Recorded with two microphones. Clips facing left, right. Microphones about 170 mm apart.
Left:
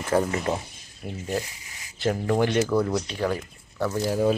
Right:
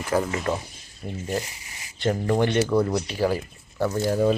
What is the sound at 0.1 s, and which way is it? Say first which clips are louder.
Speech: left 1 dB; 25° left (ahead or behind).